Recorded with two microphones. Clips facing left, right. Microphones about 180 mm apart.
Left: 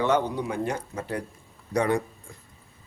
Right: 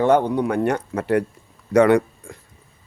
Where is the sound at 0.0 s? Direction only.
50° right (ahead or behind).